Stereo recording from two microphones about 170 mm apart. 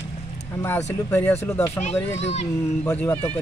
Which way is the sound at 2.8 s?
10° left (ahead or behind).